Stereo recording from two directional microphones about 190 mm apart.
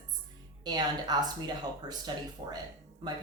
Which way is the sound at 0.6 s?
20° right (ahead or behind).